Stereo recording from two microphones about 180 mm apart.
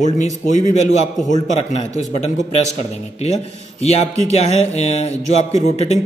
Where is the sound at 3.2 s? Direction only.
35° left (ahead or behind).